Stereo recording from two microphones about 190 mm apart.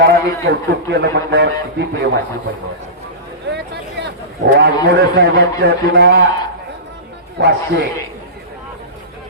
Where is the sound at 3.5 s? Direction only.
60° right (ahead or behind).